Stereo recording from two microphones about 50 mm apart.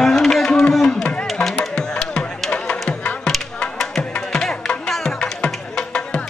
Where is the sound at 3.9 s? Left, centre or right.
Centre.